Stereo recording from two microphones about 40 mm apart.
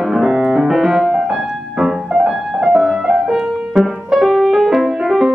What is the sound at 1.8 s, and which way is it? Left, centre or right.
Music, centre.